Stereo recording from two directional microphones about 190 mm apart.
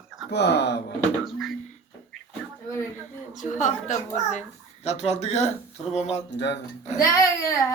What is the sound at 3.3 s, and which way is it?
A child's voice, 40° left (ahead or behind).